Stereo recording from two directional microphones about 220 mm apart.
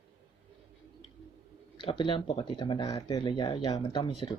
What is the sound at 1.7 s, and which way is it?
Speech, 20° left (ahead or behind).